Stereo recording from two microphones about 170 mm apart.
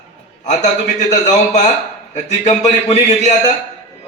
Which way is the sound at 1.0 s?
45° left (ahead or behind).